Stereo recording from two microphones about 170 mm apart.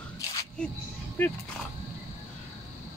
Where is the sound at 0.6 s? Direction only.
5° left (ahead or behind).